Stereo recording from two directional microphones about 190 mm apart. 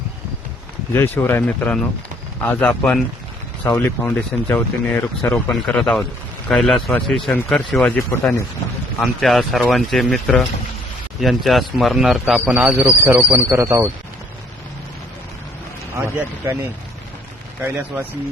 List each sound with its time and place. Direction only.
0.9 s a man's voice: 10° left (ahead or behind); by 13.9 s 15° right (ahead or behind)
16.0 s speech: 10° right (ahead or behind)